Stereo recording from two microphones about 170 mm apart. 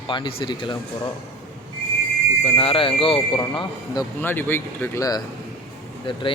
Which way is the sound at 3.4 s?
20° left (ahead or behind).